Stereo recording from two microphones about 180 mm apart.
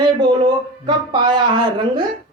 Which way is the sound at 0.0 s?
25° right (ahead or behind).